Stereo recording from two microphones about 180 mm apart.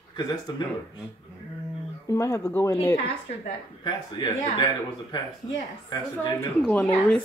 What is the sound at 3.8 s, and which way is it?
Speech, 25° left (ahead or behind).